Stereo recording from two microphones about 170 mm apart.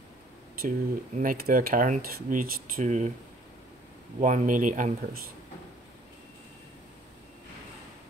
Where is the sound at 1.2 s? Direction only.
60° right (ahead or behind).